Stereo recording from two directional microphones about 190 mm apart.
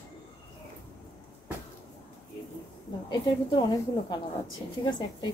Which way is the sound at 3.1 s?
20° left (ahead or behind).